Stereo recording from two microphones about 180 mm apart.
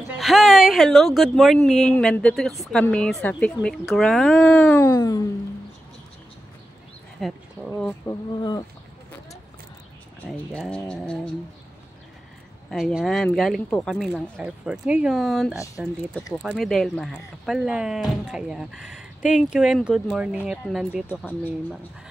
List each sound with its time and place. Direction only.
0.2 s speech: centre (ahead or behind)
4.7 s speech: 20° left (ahead or behind)
7.2 s speech: centre (ahead or behind)
8.1 s speech: 20° left (ahead or behind)
10.5 s speech: 5° left (ahead or behind)
12.6 s speech: centre (ahead or behind)
21.1 s speech: 10° left (ahead or behind)